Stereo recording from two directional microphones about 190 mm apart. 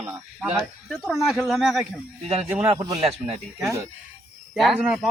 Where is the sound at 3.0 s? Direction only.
30° right (ahead or behind).